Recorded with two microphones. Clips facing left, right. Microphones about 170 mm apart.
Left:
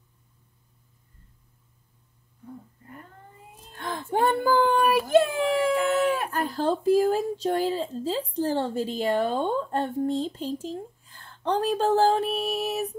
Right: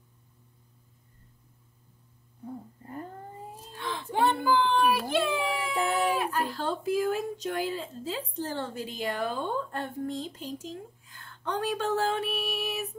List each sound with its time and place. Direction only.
2.4 s speech: 35° right (ahead or behind)
3.7 s a sound: 50° left (ahead or behind)
6.2 s speech: 40° left (ahead or behind)